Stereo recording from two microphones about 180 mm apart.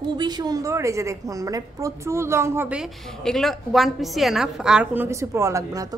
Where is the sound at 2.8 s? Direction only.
Centre (ahead or behind).